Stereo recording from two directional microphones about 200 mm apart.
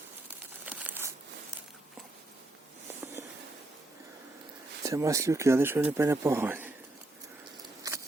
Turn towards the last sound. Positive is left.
turn(degrees=-15)  # may be behind; listen again after turning